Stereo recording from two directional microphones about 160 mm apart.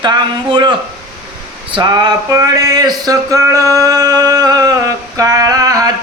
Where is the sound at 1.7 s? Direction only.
25° right (ahead or behind).